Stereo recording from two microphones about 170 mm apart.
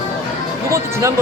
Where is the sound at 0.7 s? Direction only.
15° right (ahead or behind).